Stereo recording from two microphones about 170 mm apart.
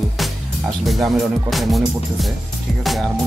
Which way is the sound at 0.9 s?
Centre (ahead or behind).